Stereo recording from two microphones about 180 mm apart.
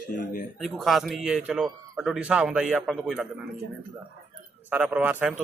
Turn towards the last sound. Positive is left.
turn(degrees=-10)  # may be behind; listen again after turning